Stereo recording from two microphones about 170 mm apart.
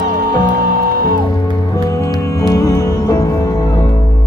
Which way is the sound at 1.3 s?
20° left (ahead or behind).